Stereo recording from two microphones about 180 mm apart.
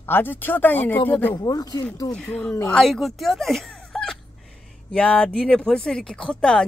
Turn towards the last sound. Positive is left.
turn(degrees=5)  # may be behind; listen again after turning